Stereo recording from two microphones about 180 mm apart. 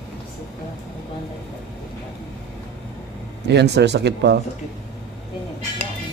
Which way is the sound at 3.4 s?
70° right (ahead or behind).